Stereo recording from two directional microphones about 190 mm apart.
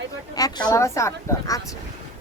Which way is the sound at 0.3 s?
20° left (ahead or behind).